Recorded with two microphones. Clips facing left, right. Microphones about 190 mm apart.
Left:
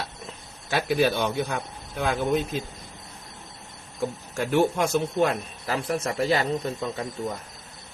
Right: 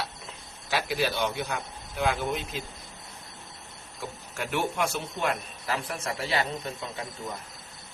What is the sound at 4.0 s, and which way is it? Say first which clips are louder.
A man's voice: left 8 dB; 40° left (ahead or behind).